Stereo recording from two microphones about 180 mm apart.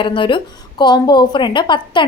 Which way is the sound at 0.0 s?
30° left (ahead or behind).